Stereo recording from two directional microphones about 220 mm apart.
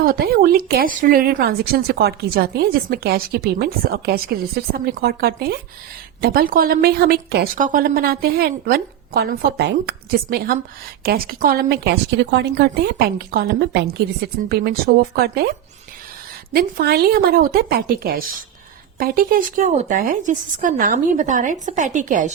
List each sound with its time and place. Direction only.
0.0 s speech: 40° right (ahead or behind)